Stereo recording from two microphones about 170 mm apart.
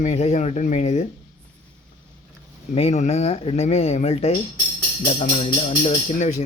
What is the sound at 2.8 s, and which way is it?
Speech, 40° left (ahead or behind).